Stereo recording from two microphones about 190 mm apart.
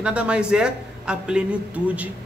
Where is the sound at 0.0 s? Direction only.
5° right (ahead or behind).